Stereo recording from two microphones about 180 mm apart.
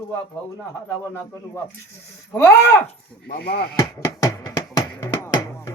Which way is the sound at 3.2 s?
60° left (ahead or behind).